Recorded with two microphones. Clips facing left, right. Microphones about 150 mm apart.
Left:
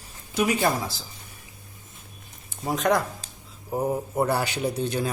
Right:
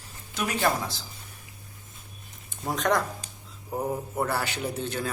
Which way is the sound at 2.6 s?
5° left (ahead or behind).